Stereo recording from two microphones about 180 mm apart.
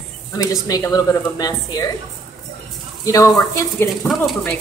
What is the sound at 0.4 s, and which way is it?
A woman's voice, 20° left (ahead or behind).